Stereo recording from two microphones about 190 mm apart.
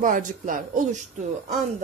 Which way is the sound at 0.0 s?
45° right (ahead or behind).